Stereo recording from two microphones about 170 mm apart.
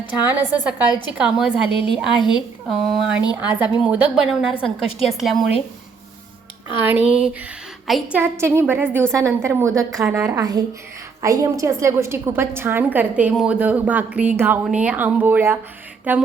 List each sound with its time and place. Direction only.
0.0 s a woman's voice: 10° right (ahead or behind)
6.8 s a woman's voice: 10° right (ahead or behind)